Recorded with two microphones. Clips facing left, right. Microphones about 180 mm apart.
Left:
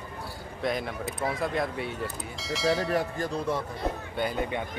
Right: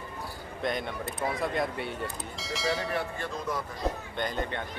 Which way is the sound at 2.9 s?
35° left (ahead or behind).